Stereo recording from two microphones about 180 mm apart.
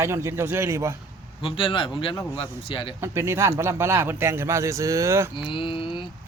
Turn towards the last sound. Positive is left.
turn(degrees=30)  # may be behind; listen again after turning